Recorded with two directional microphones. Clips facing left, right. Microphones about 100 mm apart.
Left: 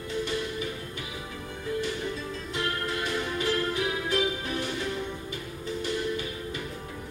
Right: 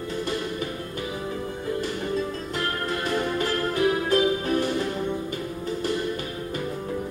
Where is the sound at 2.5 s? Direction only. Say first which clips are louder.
Right 1 dB; 45° right (ahead or behind).